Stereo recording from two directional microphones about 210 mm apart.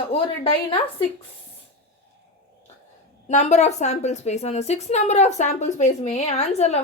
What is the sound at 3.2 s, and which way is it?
A woman's voice, 35° left (ahead or behind).